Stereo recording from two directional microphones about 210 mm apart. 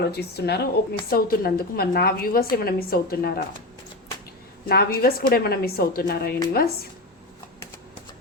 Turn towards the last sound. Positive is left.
turn(degrees=45)  # may be behind; listen again after turning